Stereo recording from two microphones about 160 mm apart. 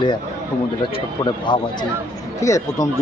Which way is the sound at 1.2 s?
30° left (ahead or behind).